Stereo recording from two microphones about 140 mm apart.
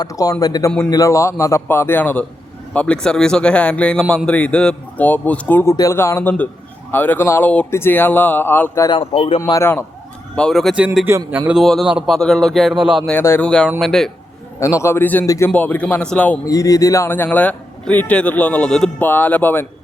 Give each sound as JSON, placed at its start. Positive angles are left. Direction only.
{"t": 0.0, "sound": "a man's voice", "side_deg": 25}
{"t": 8.9, "sound": "speech", "side_deg": 40}
{"t": 9.4, "sound": "a man's voice", "side_deg": 20}
{"t": 10.3, "sound": "speech", "side_deg": 5}
{"t": 10.8, "sound": "a man's voice", "side_deg": -10}
{"t": 11.6, "sound": "speech", "side_deg": 0}
{"t": 13.1, "sound": "speech", "side_deg": 15}
{"t": 13.7, "sound": "speech", "side_deg": 5}
{"t": 14.6, "sound": "speech", "side_deg": 20}
{"t": 16.5, "sound": "speech", "side_deg": 25}